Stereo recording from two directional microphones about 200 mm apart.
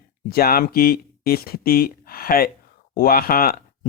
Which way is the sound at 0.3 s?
50° left (ahead or behind).